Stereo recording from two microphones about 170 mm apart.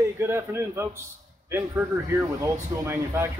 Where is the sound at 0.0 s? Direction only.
15° right (ahead or behind).